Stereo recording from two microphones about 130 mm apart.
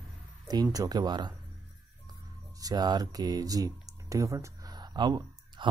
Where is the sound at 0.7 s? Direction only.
30° right (ahead or behind).